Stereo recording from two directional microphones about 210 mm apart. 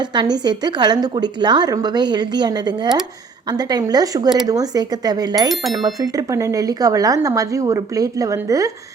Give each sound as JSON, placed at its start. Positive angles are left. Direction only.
{"t": 0.0, "sound": "a woman's voice", "side_deg": -20}
{"t": 5.5, "sound": "speech", "side_deg": 0}
{"t": 5.8, "sound": "speech", "side_deg": -15}